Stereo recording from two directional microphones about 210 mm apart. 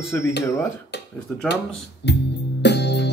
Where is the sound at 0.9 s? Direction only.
55° left (ahead or behind).